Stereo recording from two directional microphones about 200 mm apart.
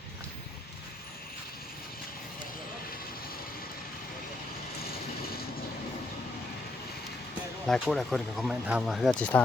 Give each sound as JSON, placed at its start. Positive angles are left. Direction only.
{"t": 7.7, "sound": "speech", "side_deg": 0}